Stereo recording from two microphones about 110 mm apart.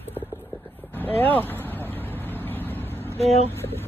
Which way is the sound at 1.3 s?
20° left (ahead or behind).